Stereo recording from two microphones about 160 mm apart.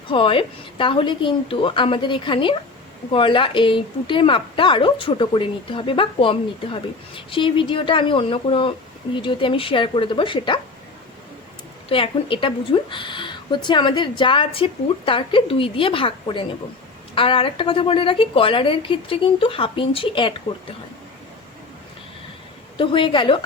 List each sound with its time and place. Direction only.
0.1 s speech: 35° left (ahead or behind)
11.9 s speech: 35° left (ahead or behind)
22.8 s speech: 30° left (ahead or behind)